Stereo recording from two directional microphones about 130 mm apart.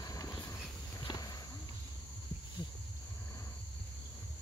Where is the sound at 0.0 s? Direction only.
25° left (ahead or behind).